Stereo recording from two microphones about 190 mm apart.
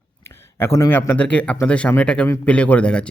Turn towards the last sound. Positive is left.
turn(degrees=5)  # may be behind; listen again after turning